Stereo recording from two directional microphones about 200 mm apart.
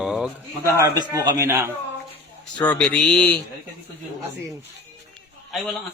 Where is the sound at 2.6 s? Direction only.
5° left (ahead or behind).